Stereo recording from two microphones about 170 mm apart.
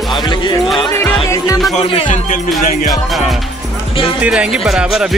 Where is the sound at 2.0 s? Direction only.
50° left (ahead or behind).